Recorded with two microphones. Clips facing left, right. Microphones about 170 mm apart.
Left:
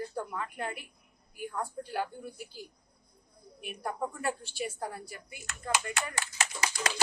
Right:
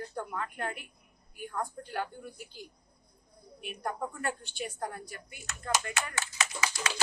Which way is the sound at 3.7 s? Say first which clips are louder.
Left 1 dB; 5° left (ahead or behind).